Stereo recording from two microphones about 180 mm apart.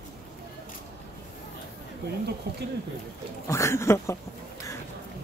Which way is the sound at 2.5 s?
65° right (ahead or behind).